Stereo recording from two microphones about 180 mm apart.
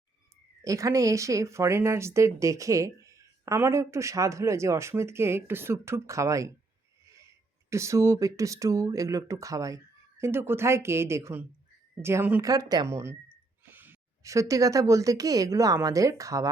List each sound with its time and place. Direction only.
0.6 s speech: 20° right (ahead or behind)
7.7 s speech: 15° right (ahead or behind)